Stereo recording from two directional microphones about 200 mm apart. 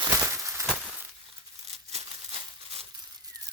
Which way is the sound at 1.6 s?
30° right (ahead or behind).